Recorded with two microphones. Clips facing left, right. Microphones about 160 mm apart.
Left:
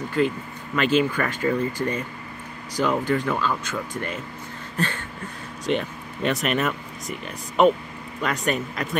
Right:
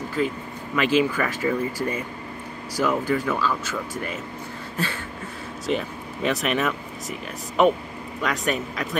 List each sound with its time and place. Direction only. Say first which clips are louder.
0.2 s speech: left 3 dB; centre (ahead or behind)
3.3 s speech: even; 20° left (ahead or behind)
3.6 s speech: even; 5° right (ahead or behind)